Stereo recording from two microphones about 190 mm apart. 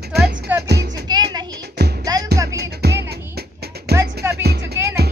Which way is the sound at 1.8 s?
60° right (ahead or behind).